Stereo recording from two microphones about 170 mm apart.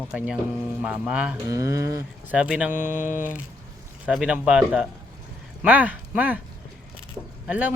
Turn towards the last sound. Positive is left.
turn(degrees=-10)  # may be behind; listen again after turning